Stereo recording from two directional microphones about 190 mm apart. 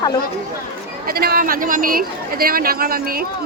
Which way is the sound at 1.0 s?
55° right (ahead or behind).